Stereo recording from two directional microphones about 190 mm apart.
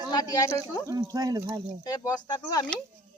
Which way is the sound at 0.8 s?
20° right (ahead or behind).